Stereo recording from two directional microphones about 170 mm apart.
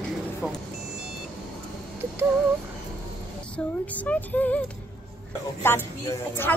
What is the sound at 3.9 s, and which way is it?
Speech, 10° left (ahead or behind).